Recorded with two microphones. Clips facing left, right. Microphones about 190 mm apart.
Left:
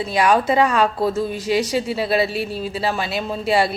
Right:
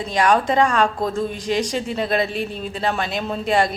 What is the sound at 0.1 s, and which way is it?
A woman's voice, 10° left (ahead or behind).